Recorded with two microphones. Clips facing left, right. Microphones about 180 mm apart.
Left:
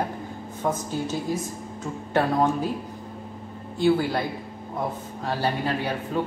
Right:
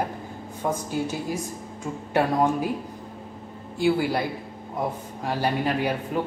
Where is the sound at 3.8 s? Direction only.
10° right (ahead or behind).